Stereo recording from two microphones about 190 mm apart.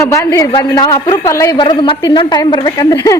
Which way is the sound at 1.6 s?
25° left (ahead or behind).